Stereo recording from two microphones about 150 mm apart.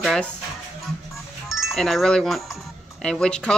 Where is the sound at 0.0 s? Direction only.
5° left (ahead or behind).